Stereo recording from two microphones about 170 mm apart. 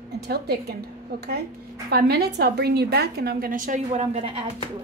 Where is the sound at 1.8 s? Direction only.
70° right (ahead or behind); by 4.4 s 40° right (ahead or behind).